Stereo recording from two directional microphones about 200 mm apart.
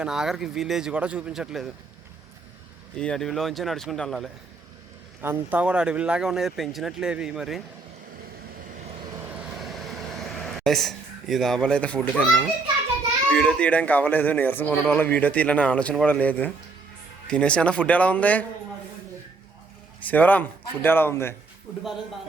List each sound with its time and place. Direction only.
0.0 s speech: 5° right (ahead or behind)
2.9 s speech: 5° left (ahead or behind)
5.2 s speech: 10° right (ahead or behind)
9.6 s a sound: centre (ahead or behind)
13.3 s a man's voice: 5° left (ahead or behind)
20.1 s a man's voice: 10° left (ahead or behind)